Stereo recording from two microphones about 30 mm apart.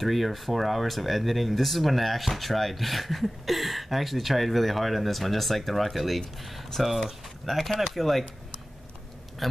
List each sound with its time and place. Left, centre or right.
0.0 s speech: centre
9.4 s speech: centre